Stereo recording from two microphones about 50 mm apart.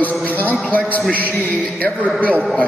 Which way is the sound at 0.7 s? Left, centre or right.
Left.